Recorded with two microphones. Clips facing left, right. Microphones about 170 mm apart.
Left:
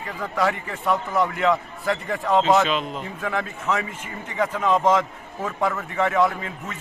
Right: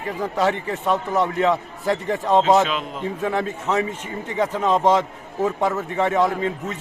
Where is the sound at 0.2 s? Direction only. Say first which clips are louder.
Right 2 dB; 20° right (ahead or behind).